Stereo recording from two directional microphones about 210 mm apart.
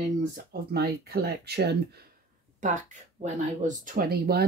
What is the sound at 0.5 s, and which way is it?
Speech, 45° right (ahead or behind).